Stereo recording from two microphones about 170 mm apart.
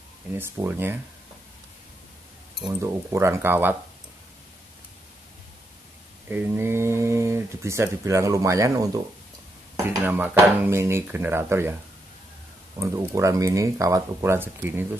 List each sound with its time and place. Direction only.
0.3 s speech: 15° right (ahead or behind)
2.7 s speech: 15° right (ahead or behind)
6.2 s speech: 10° right (ahead or behind)
12.7 s speech: 20° right (ahead or behind)